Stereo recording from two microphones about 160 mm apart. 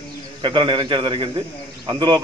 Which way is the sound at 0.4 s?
30° right (ahead or behind).